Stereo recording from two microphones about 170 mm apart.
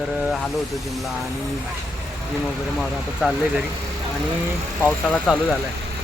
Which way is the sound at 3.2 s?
5° right (ahead or behind).